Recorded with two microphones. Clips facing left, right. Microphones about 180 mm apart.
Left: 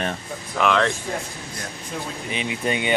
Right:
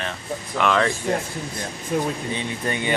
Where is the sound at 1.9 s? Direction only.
50° right (ahead or behind).